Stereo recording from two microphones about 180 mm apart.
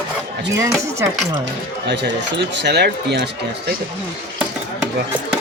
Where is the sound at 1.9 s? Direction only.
75° right (ahead or behind).